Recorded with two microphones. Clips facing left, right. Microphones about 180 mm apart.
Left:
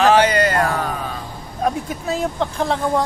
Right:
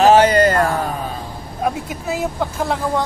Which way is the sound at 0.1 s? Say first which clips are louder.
Right 3 dB; 40° right (ahead or behind).